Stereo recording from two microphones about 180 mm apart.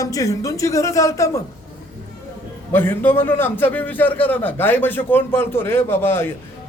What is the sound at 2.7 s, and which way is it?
A man's voice, 10° left (ahead or behind).